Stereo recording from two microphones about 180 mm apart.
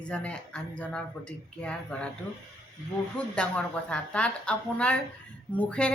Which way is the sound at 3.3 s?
5° left (ahead or behind).